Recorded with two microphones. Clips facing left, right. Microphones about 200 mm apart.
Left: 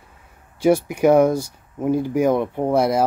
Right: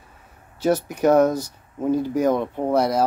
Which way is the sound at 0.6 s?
10° left (ahead or behind).